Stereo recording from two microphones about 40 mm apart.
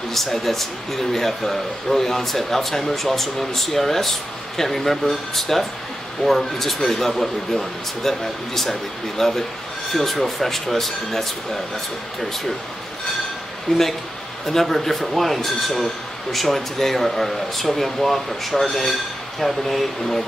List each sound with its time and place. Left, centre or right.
0.1 s a man's voice: centre
13.7 s speech: left
14.4 s speech: centre